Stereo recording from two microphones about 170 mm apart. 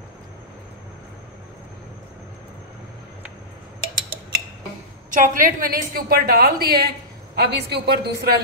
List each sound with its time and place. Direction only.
5.1 s a woman's voice: 50° right (ahead or behind); by 8.4 s 70° right (ahead or behind)